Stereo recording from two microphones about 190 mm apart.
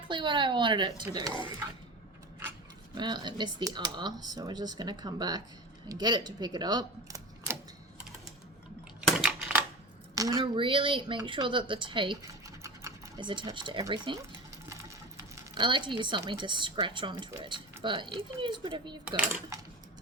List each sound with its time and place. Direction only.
0.1 s speech: 25° right (ahead or behind)
2.9 s speech: 25° right (ahead or behind)
9.0 s a sound: 5° right (ahead or behind)
10.2 s speech: 20° right (ahead or behind)
15.4 s speech: 25° right (ahead or behind)